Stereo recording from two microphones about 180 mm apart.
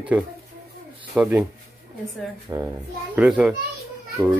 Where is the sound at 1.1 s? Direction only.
10° right (ahead or behind).